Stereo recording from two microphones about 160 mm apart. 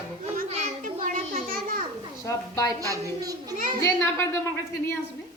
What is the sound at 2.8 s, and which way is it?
Speech, 20° right (ahead or behind).